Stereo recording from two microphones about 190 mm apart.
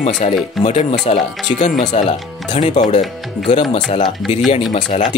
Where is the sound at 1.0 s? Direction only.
35° left (ahead or behind).